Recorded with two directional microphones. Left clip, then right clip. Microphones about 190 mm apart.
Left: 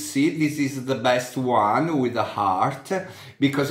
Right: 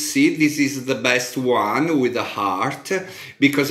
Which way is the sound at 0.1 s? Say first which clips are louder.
Right 5 dB; 20° left (ahead or behind).